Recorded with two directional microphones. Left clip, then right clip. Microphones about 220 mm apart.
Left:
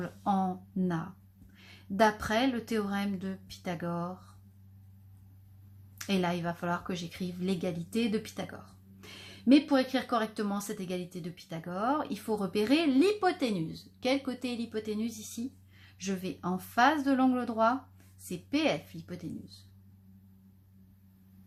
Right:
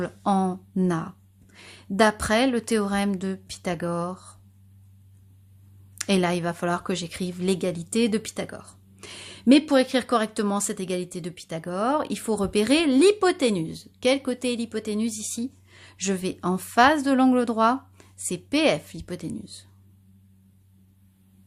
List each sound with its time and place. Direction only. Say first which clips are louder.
0.0 s speech: right 7 dB; 45° right (ahead or behind)
6.0 s speech: right 8 dB; 45° right (ahead or behind)